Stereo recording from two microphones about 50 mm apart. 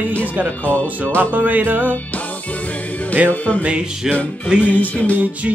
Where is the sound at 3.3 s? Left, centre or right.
Left.